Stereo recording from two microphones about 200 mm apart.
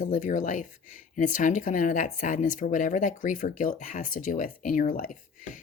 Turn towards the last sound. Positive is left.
turn(degrees=40)  # may be behind; listen again after turning